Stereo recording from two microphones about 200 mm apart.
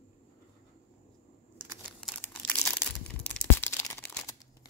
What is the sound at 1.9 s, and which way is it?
Crumpling, 5° left (ahead or behind).